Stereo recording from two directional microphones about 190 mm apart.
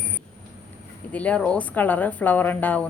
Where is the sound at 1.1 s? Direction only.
5° left (ahead or behind).